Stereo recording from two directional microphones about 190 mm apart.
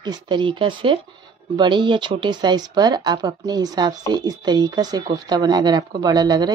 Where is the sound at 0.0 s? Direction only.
25° right (ahead or behind).